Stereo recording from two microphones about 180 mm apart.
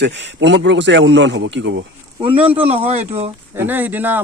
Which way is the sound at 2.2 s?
30° right (ahead or behind).